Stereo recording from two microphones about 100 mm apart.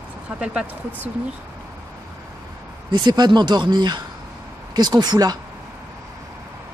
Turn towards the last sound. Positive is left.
turn(degrees=-45)  # may be behind; listen again after turning